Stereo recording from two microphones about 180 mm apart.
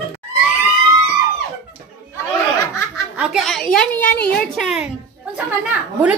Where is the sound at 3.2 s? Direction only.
Centre (ahead or behind).